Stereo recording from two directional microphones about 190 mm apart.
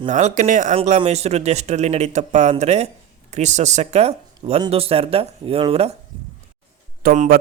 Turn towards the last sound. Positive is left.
turn(degrees=-45)  # may be behind; listen again after turning